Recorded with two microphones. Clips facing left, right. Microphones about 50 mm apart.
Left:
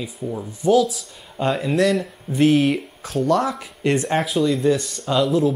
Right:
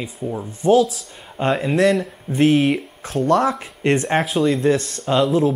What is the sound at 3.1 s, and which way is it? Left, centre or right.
Speech, right.